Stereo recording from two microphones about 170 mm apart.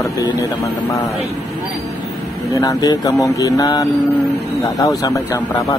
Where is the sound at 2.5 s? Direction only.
20° left (ahead or behind).